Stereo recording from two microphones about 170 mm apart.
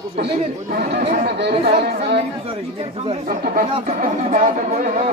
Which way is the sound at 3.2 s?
55° right (ahead or behind).